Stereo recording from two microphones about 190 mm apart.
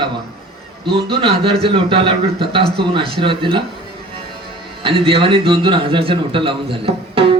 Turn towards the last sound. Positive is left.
turn(degrees=-30)  # may be behind; listen again after turning